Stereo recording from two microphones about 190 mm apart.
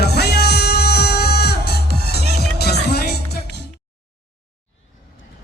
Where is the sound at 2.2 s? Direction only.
35° right (ahead or behind).